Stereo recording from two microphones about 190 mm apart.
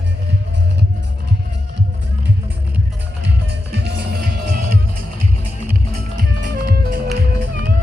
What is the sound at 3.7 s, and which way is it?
Music, 55° right (ahead or behind).